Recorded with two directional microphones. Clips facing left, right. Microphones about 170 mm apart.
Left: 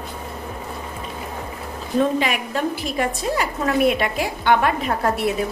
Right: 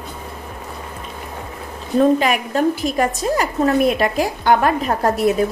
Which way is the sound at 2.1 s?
45° right (ahead or behind).